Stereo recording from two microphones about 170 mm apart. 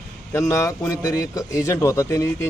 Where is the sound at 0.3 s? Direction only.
15° left (ahead or behind).